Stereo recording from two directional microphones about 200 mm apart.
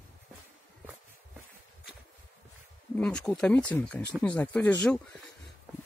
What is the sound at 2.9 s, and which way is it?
Speech, 5° left (ahead or behind).